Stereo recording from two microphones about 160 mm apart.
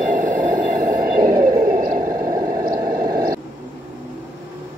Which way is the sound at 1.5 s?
20° right (ahead or behind).